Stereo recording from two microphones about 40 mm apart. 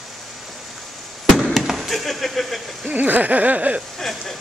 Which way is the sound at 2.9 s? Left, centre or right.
Right.